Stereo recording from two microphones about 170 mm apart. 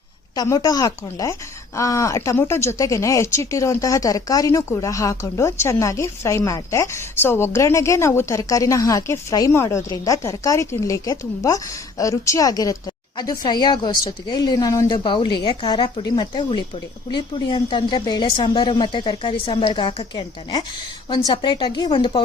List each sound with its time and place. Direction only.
0.3 s speech: 20° left (ahead or behind)